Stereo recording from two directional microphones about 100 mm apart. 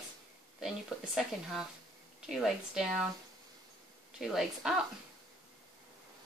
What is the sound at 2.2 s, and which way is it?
Speech, 5° right (ahead or behind).